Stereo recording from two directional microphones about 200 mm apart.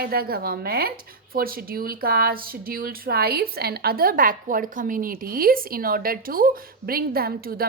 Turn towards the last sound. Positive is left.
turn(degrees=-50)  # may be behind; listen again after turning